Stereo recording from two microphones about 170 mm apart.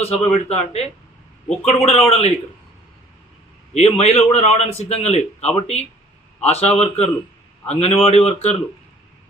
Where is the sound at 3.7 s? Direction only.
40° left (ahead or behind).